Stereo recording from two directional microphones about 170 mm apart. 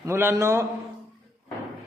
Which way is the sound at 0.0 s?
15° right (ahead or behind).